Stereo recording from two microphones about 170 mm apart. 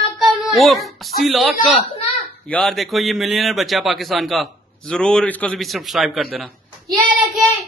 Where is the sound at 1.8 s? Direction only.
40° left (ahead or behind).